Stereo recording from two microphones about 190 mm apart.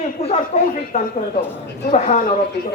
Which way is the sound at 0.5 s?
35° left (ahead or behind).